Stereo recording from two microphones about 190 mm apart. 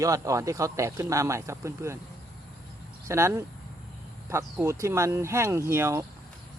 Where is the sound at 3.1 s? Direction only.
15° right (ahead or behind).